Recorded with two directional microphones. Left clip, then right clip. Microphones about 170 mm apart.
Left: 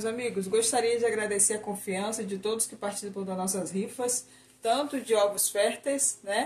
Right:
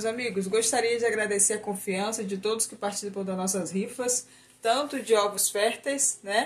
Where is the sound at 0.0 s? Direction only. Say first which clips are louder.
Right 2 dB; 15° right (ahead or behind).